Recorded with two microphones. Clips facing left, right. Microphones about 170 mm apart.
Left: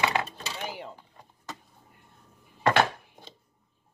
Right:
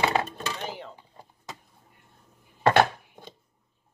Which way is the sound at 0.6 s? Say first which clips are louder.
Right 1 dB; 10° left (ahead or behind).